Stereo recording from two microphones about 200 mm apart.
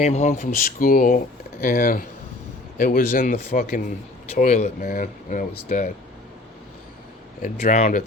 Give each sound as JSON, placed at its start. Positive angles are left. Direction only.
{"t": 0.0, "sound": "a man's voice", "side_deg": 35}
{"t": 7.6, "sound": "speech", "side_deg": 40}